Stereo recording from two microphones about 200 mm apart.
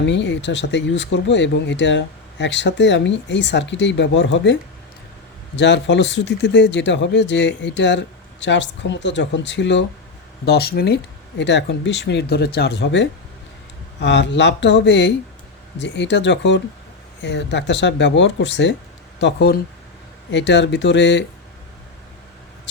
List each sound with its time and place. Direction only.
0.0 s speech: 65° left (ahead or behind)
5.5 s speech: 60° left (ahead or behind)
10.4 s speech: 50° left (ahead or behind)